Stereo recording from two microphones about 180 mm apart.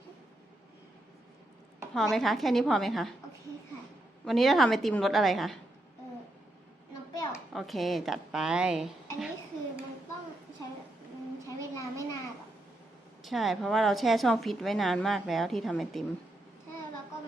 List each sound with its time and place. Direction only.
1.9 s a woman's voice: centre (ahead or behind)
4.3 s a woman's voice: centre (ahead or behind)
7.1 s a sound: 20° left (ahead or behind)
7.5 s a woman's voice: centre (ahead or behind)
11.4 s a sound: 20° left (ahead or behind)
13.2 s a woman's voice: centre (ahead or behind)